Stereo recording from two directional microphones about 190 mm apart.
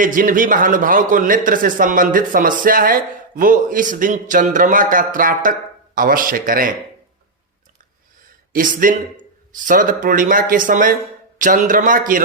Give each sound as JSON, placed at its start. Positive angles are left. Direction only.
{"t": 0.0, "sound": "a man's voice", "side_deg": -45}
{"t": 8.5, "sound": "a man's voice", "side_deg": -45}